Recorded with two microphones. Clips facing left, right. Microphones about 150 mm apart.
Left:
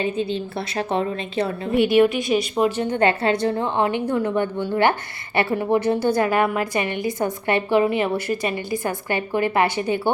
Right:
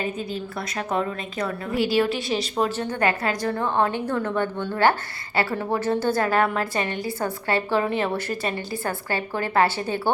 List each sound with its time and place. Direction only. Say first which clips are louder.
0.0 s a woman's voice: left 5 dB; 30° left (ahead or behind)
2.2 s speech: left 5 dB; 35° right (ahead or behind)
2.6 s a woman's voice: left 4 dB; 15° left (ahead or behind)
3.0 s a woman's voice: left 5 dB; 25° left (ahead or behind)